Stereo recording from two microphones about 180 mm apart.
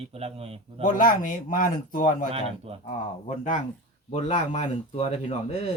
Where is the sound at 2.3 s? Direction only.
35° right (ahead or behind).